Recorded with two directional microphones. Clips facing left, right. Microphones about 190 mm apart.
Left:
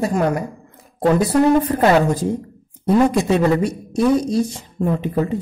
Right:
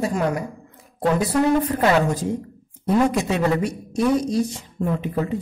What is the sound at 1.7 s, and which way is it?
Speech, 40° left (ahead or behind).